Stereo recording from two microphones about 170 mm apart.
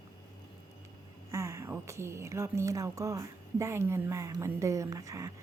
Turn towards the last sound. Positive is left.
turn(degrees=-20)  # may be behind; listen again after turning